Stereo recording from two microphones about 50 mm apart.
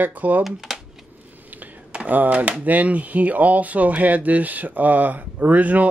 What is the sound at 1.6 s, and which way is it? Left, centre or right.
Computer keyboard, right.